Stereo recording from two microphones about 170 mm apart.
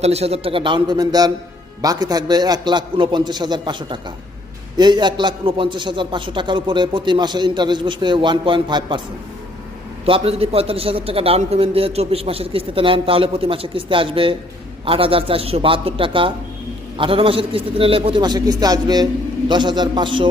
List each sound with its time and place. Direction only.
0.0 s a man's voice: 40° right (ahead or behind)
10.1 s a man's voice: 35° right (ahead or behind)